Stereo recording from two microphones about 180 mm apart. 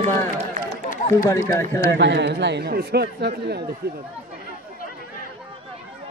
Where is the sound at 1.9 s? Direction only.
75° right (ahead or behind).